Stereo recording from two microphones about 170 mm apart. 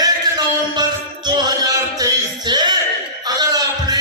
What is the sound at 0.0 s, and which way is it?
Music, 25° right (ahead or behind).